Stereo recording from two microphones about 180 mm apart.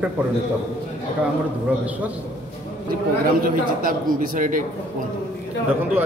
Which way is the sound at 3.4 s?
50° right (ahead or behind).